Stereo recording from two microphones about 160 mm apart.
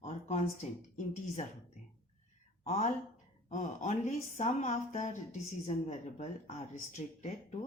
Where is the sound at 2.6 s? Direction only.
45° left (ahead or behind).